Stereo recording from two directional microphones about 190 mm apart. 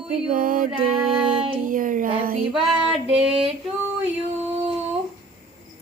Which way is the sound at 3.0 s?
5° right (ahead or behind).